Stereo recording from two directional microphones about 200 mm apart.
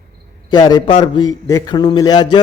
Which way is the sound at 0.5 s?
20° left (ahead or behind).